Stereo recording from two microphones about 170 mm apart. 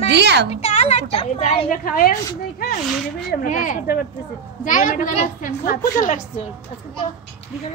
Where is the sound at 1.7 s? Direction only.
55° left (ahead or behind).